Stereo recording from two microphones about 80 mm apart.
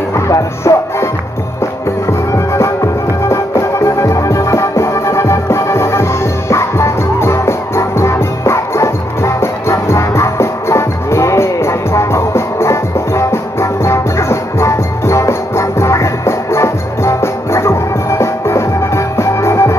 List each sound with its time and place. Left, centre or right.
0.3 s music: left
2.3 s music: left